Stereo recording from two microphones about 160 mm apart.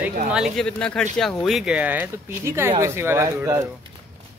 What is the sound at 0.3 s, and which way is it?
Speech, 5° right (ahead or behind).